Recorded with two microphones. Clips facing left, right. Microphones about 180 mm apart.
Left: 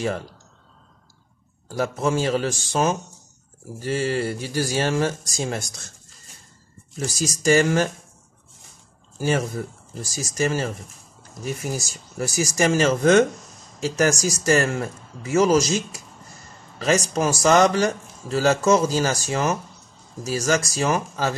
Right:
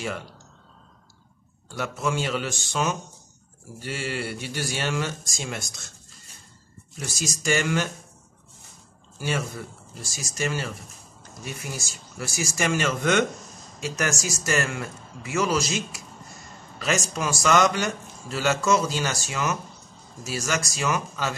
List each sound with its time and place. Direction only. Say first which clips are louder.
0.0 s speech: left 6 dB; 35° left (ahead or behind)
1.7 s speech: left 5 dB; 35° left (ahead or behind)
7.0 s speech: left 6 dB; 40° left (ahead or behind)
9.2 s speech: left 6 dB; 40° left (ahead or behind)